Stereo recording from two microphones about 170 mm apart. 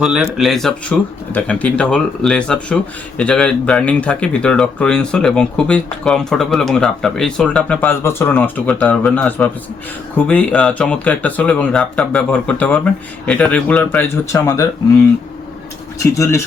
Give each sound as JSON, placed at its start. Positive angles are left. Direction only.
{"t": 0.0, "sound": "speech", "side_deg": -5}
{"t": 16.1, "sound": "speech", "side_deg": 15}